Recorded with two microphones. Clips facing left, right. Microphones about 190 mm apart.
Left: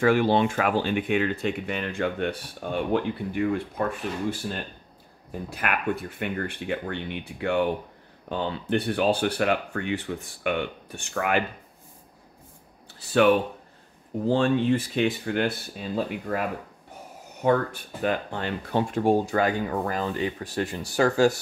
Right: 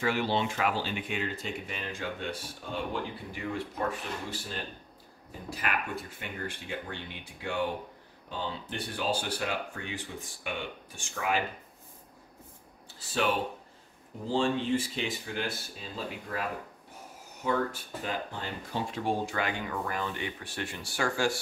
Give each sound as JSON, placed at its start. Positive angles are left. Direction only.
{"t": 0.0, "sound": "speech", "side_deg": 50}
{"t": 13.0, "sound": "speech", "side_deg": 60}